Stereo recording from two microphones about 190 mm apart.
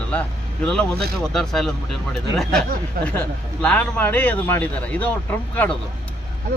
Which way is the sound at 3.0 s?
55° right (ahead or behind).